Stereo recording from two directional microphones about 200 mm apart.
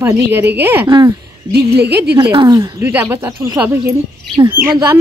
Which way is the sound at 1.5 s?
55° right (ahead or behind).